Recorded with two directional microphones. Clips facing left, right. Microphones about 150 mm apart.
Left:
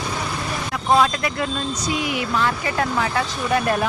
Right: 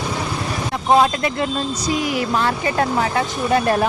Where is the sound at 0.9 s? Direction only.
25° right (ahead or behind).